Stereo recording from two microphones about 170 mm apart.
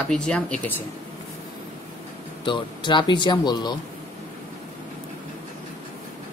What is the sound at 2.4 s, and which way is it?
A man's voice, 30° left (ahead or behind).